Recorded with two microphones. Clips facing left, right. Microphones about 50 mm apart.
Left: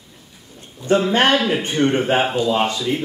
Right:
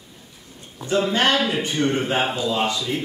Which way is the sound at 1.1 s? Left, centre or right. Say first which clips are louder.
Left 3 dB; left.